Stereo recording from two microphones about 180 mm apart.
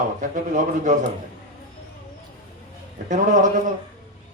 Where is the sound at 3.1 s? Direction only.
45° right (ahead or behind).